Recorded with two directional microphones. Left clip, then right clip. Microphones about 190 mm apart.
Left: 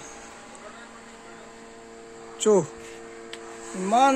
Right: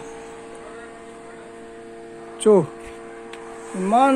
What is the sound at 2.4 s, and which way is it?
Speech, centre (ahead or behind).